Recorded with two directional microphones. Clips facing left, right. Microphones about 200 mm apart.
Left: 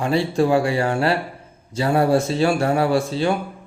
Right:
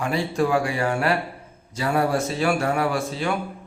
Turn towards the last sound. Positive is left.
turn(degrees=30)  # may be behind; listen again after turning